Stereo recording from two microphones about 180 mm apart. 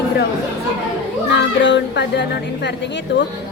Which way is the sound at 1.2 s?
85° left.